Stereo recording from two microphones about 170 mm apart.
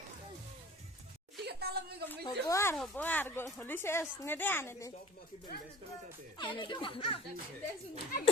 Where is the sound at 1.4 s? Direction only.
70° right (ahead or behind).